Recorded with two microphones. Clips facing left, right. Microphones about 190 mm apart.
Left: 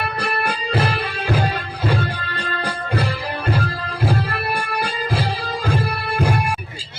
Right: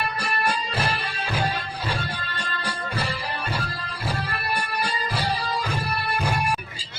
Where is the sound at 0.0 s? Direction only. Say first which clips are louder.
Left 3 dB; 60° left (ahead or behind).